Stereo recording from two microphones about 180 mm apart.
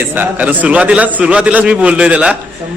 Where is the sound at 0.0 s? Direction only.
10° right (ahead or behind).